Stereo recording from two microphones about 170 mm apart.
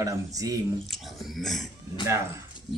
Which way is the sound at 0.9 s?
Centre (ahead or behind).